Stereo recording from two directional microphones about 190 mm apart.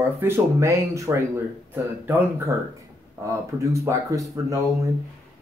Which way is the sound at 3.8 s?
15° right (ahead or behind).